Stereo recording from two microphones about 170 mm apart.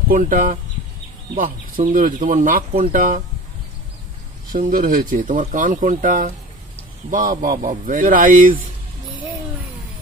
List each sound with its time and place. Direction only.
0.1 s speech: 55° right (ahead or behind)
4.5 s speech: 55° right (ahead or behind)